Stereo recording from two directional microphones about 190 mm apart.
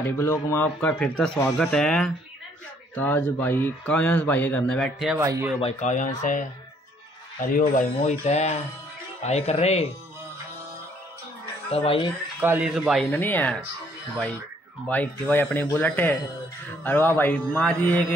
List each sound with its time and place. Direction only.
0.0 s speech: 15° left (ahead or behind)
5.2 s speech: 15° right (ahead or behind)
5.6 s speech: 35° left (ahead or behind)
7.4 s speech: 45° left (ahead or behind)
11.7 s speech: 30° left (ahead or behind)
12.4 s speech: 10° right (ahead or behind)
13.2 s speech: 10° left (ahead or behind)
14.9 s speech: 10° left (ahead or behind)